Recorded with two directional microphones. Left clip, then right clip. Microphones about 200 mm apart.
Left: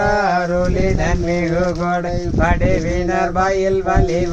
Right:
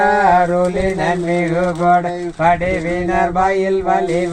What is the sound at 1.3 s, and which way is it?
Speech, 20° left (ahead or behind).